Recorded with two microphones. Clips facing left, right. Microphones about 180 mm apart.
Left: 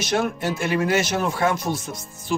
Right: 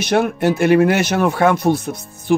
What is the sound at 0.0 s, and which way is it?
Speech, 60° right (ahead or behind).